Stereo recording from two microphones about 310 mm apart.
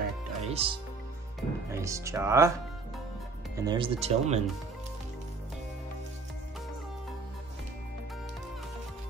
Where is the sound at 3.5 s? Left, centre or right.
Centre.